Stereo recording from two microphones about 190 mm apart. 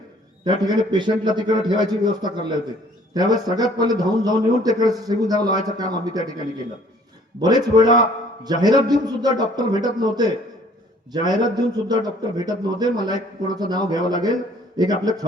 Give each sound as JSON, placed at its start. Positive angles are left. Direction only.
{"t": 0.4, "sound": "a man's voice", "side_deg": -20}
{"t": 7.3, "sound": "a man's voice", "side_deg": -20}